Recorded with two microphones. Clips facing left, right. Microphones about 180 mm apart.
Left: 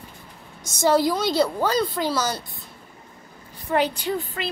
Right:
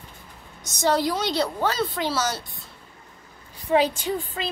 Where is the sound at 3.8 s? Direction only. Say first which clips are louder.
Even; 45° right (ahead or behind).